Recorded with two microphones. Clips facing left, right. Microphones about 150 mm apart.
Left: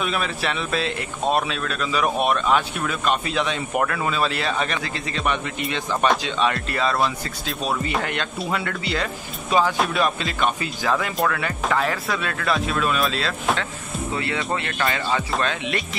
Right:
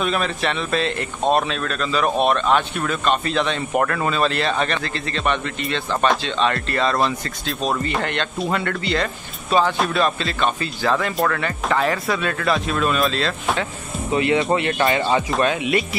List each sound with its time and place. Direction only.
0.0 s speech: 5° left (ahead or behind)
14.1 s speech: 20° right (ahead or behind)
15.4 s speech: 10° right (ahead or behind)